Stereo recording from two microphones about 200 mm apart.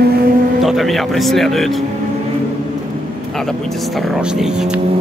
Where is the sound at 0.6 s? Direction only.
Centre (ahead or behind).